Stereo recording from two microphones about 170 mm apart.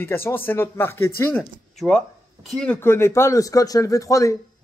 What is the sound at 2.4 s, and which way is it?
A man's voice, 5° left (ahead or behind).